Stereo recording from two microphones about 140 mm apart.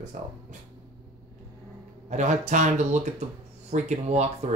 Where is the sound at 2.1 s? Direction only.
60° right (ahead or behind).